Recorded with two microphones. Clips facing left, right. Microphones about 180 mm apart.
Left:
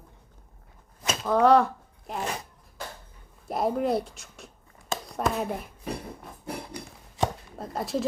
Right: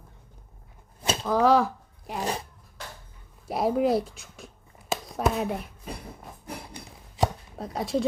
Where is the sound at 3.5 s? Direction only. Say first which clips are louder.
Right 2 dB; centre (ahead or behind).